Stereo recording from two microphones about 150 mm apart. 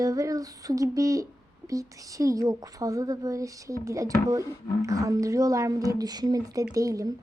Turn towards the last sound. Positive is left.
turn(degrees=-20)  # may be behind; listen again after turning